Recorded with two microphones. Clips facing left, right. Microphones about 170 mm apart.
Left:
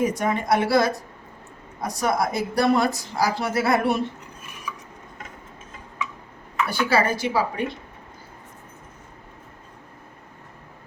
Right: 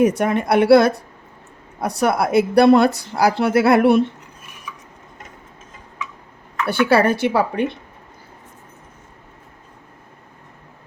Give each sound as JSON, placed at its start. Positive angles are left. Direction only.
{"t": 0.0, "sound": "a woman's voice", "side_deg": -65}
{"t": 6.7, "sound": "speech", "side_deg": -65}